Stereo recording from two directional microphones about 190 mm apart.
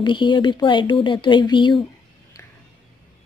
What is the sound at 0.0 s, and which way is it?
Speech, 25° left (ahead or behind).